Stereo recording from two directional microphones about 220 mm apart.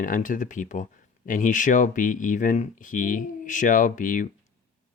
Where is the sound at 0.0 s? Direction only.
35° left (ahead or behind).